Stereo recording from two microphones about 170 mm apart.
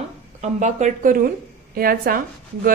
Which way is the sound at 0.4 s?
45° right (ahead or behind).